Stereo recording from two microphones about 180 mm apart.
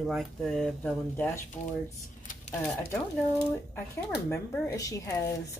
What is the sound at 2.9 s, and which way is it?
Speech, 15° left (ahead or behind).